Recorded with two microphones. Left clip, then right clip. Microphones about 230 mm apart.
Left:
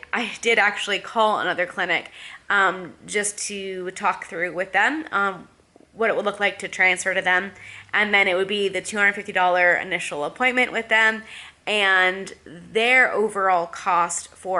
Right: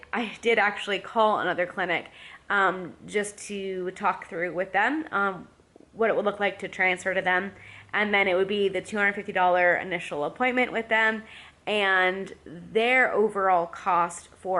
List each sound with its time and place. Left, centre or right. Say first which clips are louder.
0.1 s speech: left 4 dB; centre
14.4 s speech: left 3 dB; right